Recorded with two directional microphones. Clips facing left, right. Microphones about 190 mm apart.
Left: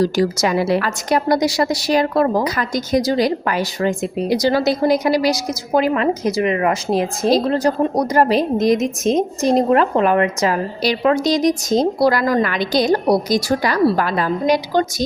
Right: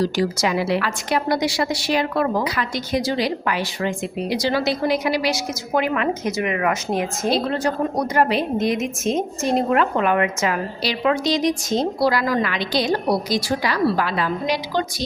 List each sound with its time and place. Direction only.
0.0 s a woman's voice: 45° left (ahead or behind)